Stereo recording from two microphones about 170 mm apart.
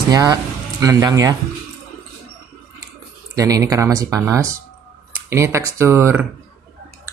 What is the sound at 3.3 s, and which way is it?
Speech, 20° right (ahead or behind).